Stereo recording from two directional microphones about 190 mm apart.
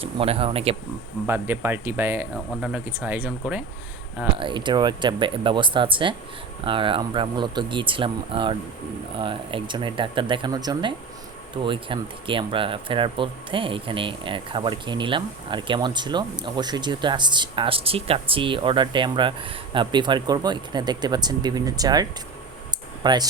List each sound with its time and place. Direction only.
0.0 s speech: 30° right (ahead or behind)
1.3 s speech: 10° right (ahead or behind)
4.4 s speech: 25° right (ahead or behind)
23.0 s speech: 20° right (ahead or behind)